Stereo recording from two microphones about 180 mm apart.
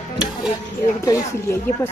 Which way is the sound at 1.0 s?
20° left (ahead or behind).